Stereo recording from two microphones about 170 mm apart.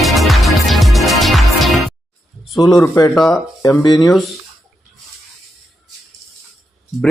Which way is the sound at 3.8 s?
20° left (ahead or behind).